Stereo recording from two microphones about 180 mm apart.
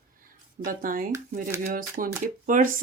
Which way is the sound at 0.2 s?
50° right (ahead or behind).